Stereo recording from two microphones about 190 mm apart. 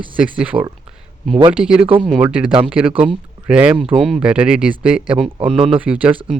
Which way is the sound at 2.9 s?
30° right (ahead or behind).